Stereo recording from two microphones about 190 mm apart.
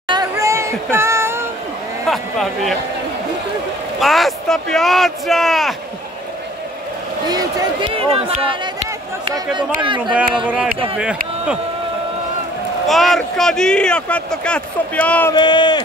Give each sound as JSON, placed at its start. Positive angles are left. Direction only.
{"t": 0.1, "sound": "a sound", "side_deg": -15}
{"t": 2.0, "sound": "speech", "side_deg": 0}
{"t": 4.0, "sound": "speech", "side_deg": 0}
{"t": 7.2, "sound": "speech", "side_deg": -20}
{"t": 10.4, "sound": "speech", "side_deg": -5}
{"t": 12.8, "sound": "speech", "side_deg": 0}
{"t": 15.3, "sound": "speech", "side_deg": 25}